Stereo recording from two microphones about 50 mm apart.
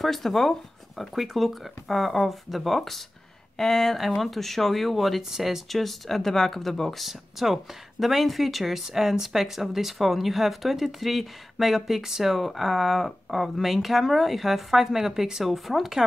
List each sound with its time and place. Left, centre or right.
0.0 s speech: centre